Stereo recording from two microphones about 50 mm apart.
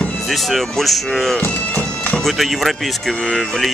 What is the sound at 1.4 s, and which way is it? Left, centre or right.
Bagpipes, left.